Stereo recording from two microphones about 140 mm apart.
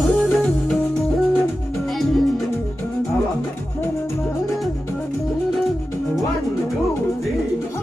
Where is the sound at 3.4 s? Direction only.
15° left (ahead or behind).